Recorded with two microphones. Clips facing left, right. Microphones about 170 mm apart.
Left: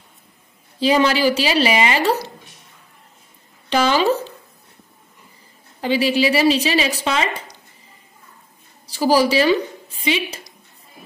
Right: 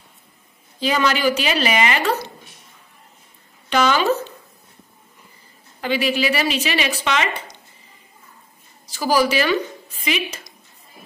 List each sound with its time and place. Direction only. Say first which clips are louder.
0.7 s a woman's voice: left 4 dB; 30° left (ahead or behind)
3.7 s a woman's voice: left 1 dB; 30° left (ahead or behind)
5.8 s a woman's voice: left 3 dB; 30° left (ahead or behind)
8.8 s a woman's voice: left 3 dB; 30° left (ahead or behind)